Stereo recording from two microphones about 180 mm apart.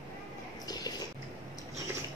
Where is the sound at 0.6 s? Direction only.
20° left (ahead or behind).